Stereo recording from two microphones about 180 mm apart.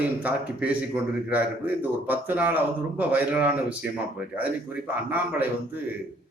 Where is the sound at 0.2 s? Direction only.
10° right (ahead or behind).